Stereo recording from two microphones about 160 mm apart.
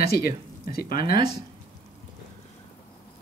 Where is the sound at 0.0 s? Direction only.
70° left (ahead or behind).